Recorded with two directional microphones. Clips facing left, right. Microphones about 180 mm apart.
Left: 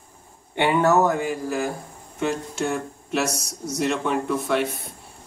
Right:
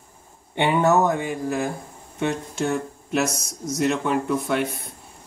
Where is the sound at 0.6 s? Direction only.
20° right (ahead or behind).